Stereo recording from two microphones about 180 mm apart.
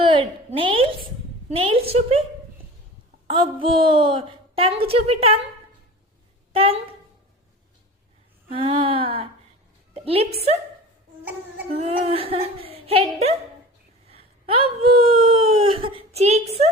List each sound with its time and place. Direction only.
0.0 s a woman's voice: 30° right (ahead or behind)
3.3 s a woman's voice: 30° right (ahead or behind)
6.5 s a woman's voice: 30° right (ahead or behind)
8.5 s a woman's voice: 30° right (ahead or behind)
9.9 s music: 35° right (ahead or behind)
11.8 s speech: 35° right (ahead or behind)